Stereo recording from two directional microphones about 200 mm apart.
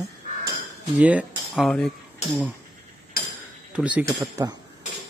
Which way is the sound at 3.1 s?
45° left (ahead or behind).